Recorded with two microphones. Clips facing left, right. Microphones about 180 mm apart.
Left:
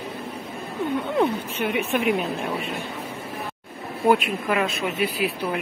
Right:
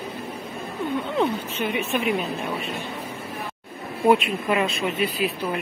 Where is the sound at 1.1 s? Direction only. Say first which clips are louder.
Left 2 dB; 10° left (ahead or behind).